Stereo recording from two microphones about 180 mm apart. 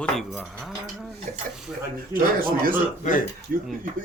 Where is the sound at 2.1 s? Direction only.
50° right (ahead or behind).